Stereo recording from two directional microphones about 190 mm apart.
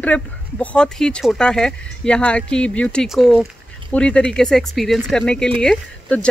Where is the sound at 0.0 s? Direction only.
5° left (ahead or behind).